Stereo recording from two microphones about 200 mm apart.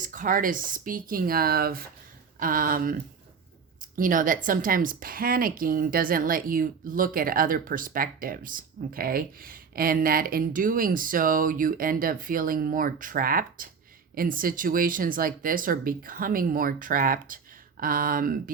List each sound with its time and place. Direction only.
0.0 s speech: 40° right (ahead or behind)